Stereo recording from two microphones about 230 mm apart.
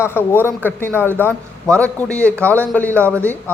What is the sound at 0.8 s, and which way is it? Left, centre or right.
A man's voice, centre.